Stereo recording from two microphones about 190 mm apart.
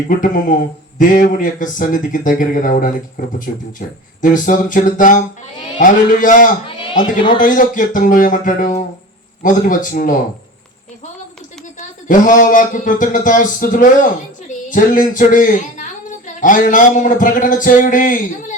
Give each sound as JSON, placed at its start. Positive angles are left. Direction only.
{"t": 0.9, "sound": "speech", "side_deg": 45}
{"t": 6.7, "sound": "speech", "side_deg": 25}
{"t": 7.3, "sound": "speech", "side_deg": 45}
{"t": 11.8, "sound": "speech", "side_deg": 45}